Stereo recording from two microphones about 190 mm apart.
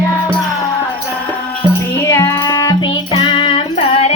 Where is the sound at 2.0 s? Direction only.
15° left (ahead or behind).